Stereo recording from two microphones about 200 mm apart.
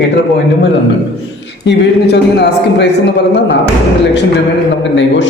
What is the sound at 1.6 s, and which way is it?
A man's voice, 60° left (ahead or behind).